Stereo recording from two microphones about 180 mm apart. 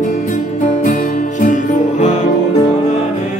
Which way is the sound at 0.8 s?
45° left (ahead or behind).